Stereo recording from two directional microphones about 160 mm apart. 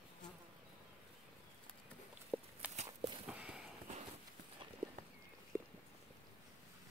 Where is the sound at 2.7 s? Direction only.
45° right (ahead or behind).